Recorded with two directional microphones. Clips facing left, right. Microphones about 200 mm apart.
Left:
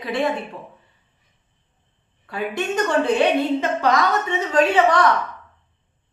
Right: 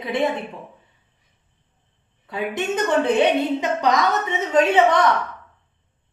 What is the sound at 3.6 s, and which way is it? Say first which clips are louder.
A woman's voice: even; 20° right (ahead or behind).